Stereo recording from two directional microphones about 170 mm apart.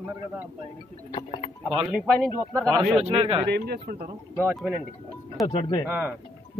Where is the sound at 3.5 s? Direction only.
65° right (ahead or behind).